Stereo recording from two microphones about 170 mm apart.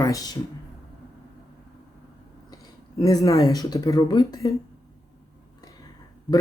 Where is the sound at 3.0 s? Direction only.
20° left (ahead or behind).